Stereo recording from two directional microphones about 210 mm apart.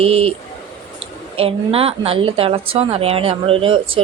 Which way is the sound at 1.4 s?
25° right (ahead or behind).